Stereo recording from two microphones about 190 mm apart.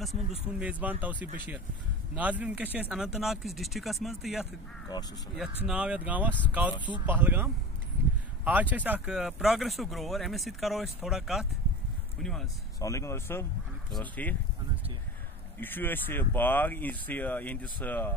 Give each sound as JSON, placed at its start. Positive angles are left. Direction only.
{"t": 0.0, "sound": "speech", "side_deg": -5}
{"t": 5.7, "sound": "speech", "side_deg": -5}
{"t": 12.7, "sound": "speech", "side_deg": 15}
{"t": 15.6, "sound": "speech", "side_deg": 10}